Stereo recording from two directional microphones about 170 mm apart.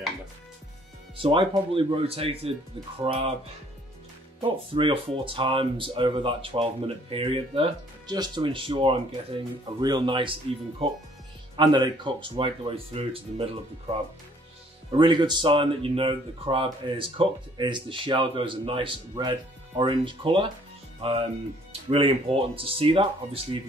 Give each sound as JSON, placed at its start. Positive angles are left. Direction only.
{"t": 1.2, "sound": "speech", "side_deg": -30}
{"t": 4.4, "sound": "speech", "side_deg": -30}